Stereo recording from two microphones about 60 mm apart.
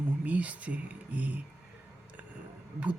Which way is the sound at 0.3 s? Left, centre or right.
Right.